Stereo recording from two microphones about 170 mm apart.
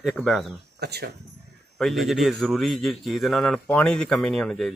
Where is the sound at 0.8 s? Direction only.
70° right (ahead or behind).